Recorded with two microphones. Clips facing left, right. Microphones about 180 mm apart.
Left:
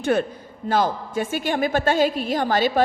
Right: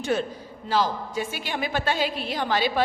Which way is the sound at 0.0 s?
55° left (ahead or behind).